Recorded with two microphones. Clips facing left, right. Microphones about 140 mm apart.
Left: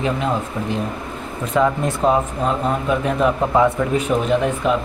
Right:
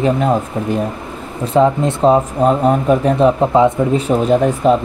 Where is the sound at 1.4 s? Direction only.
30° right (ahead or behind).